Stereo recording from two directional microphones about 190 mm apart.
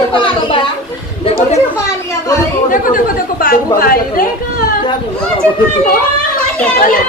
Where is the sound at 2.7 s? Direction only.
45° left (ahead or behind).